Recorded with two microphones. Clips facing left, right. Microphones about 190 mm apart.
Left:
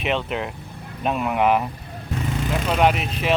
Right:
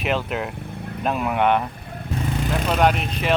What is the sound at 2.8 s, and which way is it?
Speech, centre (ahead or behind).